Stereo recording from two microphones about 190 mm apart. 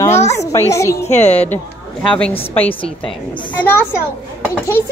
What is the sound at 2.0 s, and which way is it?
Speech, 5° left (ahead or behind).